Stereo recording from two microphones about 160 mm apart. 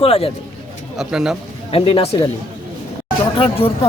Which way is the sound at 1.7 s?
35° left (ahead or behind).